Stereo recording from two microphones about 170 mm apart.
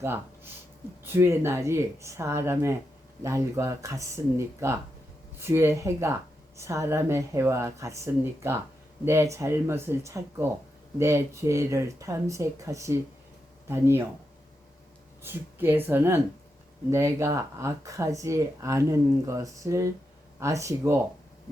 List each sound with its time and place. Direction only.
1.0 s speech: 15° right (ahead or behind)
15.2 s speech: 15° right (ahead or behind)